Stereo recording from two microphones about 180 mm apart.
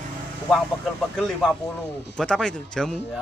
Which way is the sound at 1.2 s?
Centre (ahead or behind).